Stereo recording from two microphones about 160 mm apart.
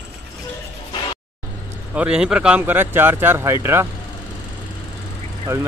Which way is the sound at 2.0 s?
5° right (ahead or behind).